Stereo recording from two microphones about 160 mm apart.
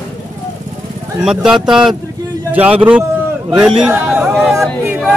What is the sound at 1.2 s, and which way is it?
A man's voice, 5° right (ahead or behind).